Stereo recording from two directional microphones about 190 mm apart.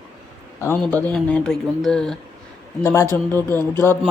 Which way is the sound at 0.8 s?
5° left (ahead or behind).